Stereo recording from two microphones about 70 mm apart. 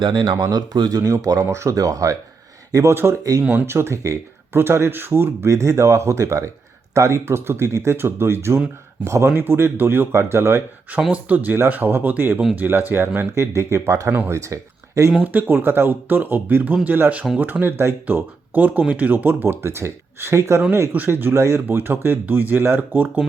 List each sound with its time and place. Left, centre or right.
0.5 s speech: right
2.9 s speech: right
3.4 s speech: right
3.7 s speech: right
5.5 s speech: right
9.3 s speech: right
11.1 s speech: centre
11.7 s speech: right
14.1 s speech: right
14.3 s speech: right
15.2 s speech: right
19.6 s speech: right